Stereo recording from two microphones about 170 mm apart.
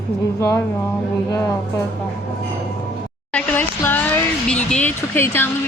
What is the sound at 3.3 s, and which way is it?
Speech, 10° left (ahead or behind).